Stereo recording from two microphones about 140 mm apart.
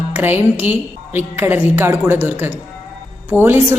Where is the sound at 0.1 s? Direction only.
15° right (ahead or behind).